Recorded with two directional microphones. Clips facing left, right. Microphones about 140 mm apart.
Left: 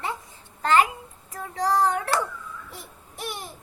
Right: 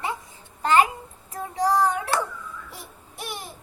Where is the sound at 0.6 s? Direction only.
20° right (ahead or behind).